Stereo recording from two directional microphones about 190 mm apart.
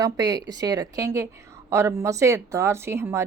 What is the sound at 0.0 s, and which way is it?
A woman's voice, 20° right (ahead or behind).